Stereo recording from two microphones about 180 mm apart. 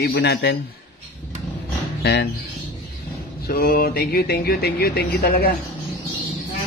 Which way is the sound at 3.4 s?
55° left (ahead or behind).